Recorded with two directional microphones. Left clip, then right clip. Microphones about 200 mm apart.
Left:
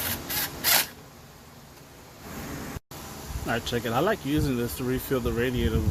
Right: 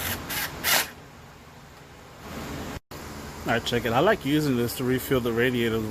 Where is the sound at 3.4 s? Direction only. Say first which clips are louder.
Right 3 dB; 10° right (ahead or behind).